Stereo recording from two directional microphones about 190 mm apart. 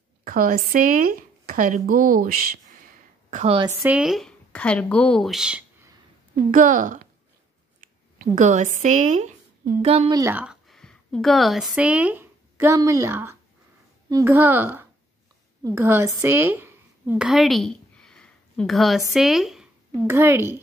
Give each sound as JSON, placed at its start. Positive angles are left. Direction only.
{"t": 0.2, "sound": "speech", "side_deg": -45}
{"t": 3.3, "sound": "a woman's voice", "side_deg": -40}
{"t": 3.8, "sound": "a woman's voice", "side_deg": -5}
{"t": 6.5, "sound": "a woman's voice", "side_deg": -45}
{"t": 10.1, "sound": "a woman's voice", "side_deg": -10}
{"t": 20.1, "sound": "a woman's voice", "side_deg": -15}